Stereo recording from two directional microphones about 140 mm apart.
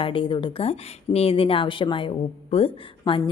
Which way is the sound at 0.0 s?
40° left (ahead or behind).